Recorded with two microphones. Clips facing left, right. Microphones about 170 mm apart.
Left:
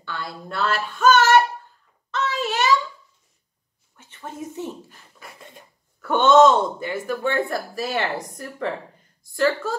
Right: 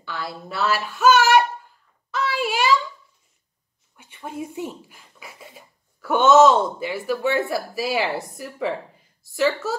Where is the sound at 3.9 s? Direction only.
10° right (ahead or behind).